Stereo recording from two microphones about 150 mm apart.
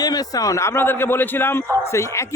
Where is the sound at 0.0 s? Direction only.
25° left (ahead or behind).